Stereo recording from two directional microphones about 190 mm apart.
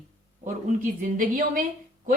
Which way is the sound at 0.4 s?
40° right (ahead or behind).